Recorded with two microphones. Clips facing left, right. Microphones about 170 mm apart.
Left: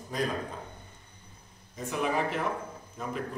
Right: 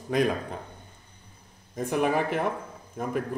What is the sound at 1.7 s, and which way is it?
Speech, 55° right (ahead or behind).